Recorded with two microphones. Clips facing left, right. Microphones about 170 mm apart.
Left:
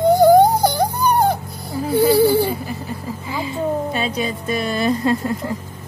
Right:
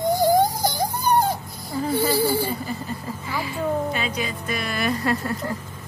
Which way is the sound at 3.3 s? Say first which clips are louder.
Left 3 dB; 25° left (ahead or behind).